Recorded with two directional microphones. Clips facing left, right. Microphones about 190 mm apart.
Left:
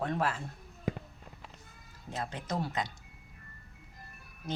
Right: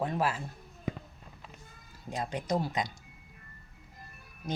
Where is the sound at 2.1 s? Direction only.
15° right (ahead or behind).